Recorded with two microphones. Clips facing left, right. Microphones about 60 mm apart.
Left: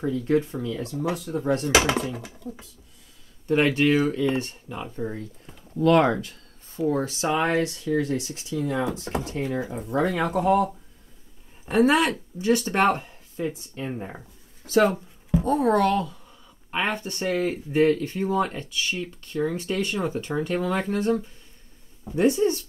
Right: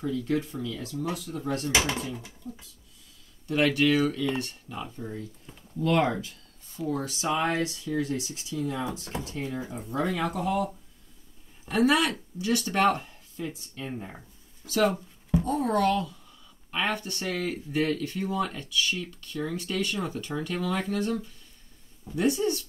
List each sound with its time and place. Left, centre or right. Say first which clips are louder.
0.0 s speech: left 5 dB; left
1.6 s speech: left 5 dB; left
3.4 s speech: left 3 dB; left
4.9 s speech: left 6 dB; left
5.8 s speech: left 6 dB; left
6.1 s a sound: left 3 dB; left
6.8 s speech: left 6 dB; left
8.5 s speech: left 5 dB; left
9.1 s speech: left 6 dB; left
9.8 s speech: left 5 dB; left
10.1 s speech: left 9 dB; left
16.7 s speech: left 2 dB; left